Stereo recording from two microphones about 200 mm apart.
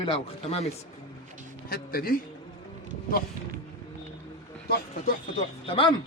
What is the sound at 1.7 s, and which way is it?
Speech, 50° left (ahead or behind).